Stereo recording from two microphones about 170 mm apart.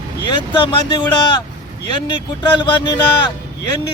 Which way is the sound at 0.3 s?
30° left (ahead or behind).